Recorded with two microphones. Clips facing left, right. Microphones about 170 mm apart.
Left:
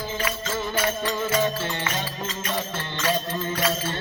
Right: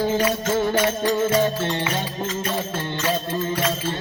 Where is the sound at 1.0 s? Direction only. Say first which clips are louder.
Right 5 dB; 35° right (ahead or behind).